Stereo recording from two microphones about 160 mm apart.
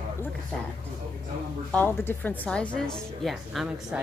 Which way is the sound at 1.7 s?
10° left (ahead or behind).